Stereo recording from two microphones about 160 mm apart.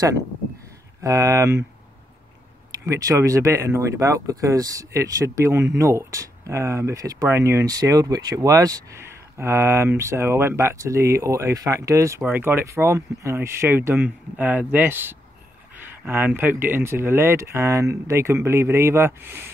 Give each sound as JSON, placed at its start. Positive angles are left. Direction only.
{"t": 1.0, "sound": "speech", "side_deg": -20}
{"t": 2.8, "sound": "speech", "side_deg": -20}